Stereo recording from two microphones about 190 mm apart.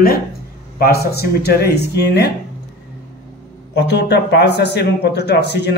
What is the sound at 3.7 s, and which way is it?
A man's voice, 60° left (ahead or behind).